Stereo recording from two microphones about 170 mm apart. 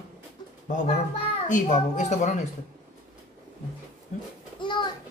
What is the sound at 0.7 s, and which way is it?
A child's voice, 45° left (ahead or behind).